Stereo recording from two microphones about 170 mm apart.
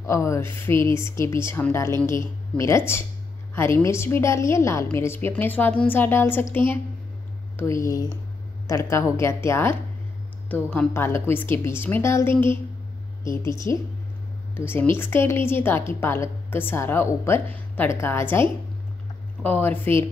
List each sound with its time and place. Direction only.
0.0 s speech: 15° left (ahead or behind)